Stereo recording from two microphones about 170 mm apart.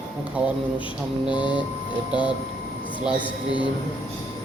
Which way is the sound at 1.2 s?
5° right (ahead or behind).